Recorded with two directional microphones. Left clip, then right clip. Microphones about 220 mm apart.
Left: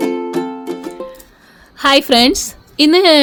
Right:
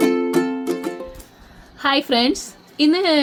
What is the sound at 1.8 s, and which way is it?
A woman's voice, 45° left (ahead or behind).